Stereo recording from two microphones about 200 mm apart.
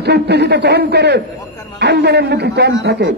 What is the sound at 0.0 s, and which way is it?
A man's voice, 55° right (ahead or behind).